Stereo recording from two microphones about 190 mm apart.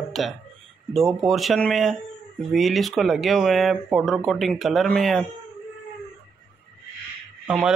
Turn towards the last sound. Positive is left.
turn(degrees=-5)  # may be behind; listen again after turning